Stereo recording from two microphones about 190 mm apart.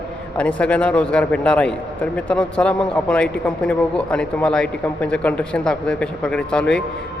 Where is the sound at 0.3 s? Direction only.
5° left (ahead or behind).